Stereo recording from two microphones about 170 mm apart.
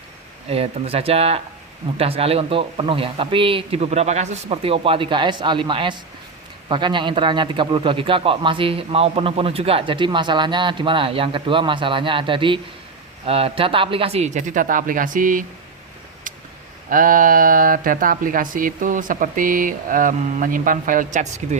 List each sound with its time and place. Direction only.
0.5 s a man's voice: 35° right (ahead or behind); by 15.4 s 50° right (ahead or behind)
16.3 s a sound: 50° right (ahead or behind)
16.9 s speech: 55° right (ahead or behind)